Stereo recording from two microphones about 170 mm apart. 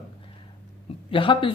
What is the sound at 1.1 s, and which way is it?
Speech, 30° left (ahead or behind).